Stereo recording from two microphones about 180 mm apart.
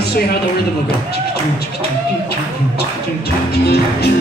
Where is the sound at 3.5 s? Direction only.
60° left (ahead or behind).